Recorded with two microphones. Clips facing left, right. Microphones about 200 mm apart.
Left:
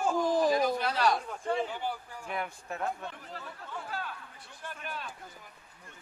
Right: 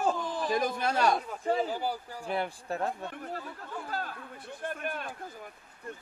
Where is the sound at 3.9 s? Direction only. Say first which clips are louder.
Right 3 dB; 40° right (ahead or behind).